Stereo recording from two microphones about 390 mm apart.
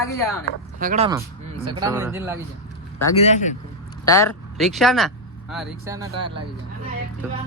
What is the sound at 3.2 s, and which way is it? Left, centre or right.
A man's voice, centre.